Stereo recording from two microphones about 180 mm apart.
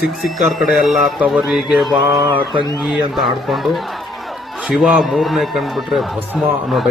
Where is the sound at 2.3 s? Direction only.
30° right (ahead or behind).